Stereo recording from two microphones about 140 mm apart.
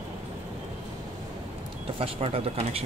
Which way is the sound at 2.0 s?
45° right (ahead or behind).